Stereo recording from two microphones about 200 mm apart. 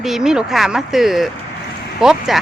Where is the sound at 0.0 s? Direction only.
Centre (ahead or behind).